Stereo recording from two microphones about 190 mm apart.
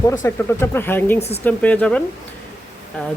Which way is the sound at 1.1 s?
35° left (ahead or behind).